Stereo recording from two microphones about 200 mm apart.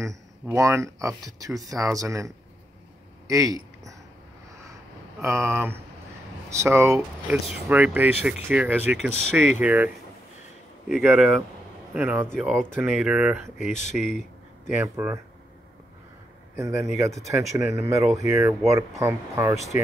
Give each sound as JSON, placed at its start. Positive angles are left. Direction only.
{"t": 0.0, "sound": "speech", "side_deg": -15}
{"t": 3.3, "sound": "a sound", "side_deg": -15}
{"t": 5.2, "sound": "speech", "side_deg": -15}
{"t": 10.9, "sound": "speech", "side_deg": -5}
{"t": 14.7, "sound": "speech", "side_deg": -10}
{"t": 16.5, "sound": "speech", "side_deg": -15}